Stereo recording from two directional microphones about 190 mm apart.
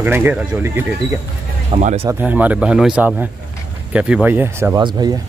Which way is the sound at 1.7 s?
35° right (ahead or behind).